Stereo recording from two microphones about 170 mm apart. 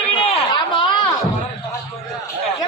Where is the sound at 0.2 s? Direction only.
30° left (ahead or behind).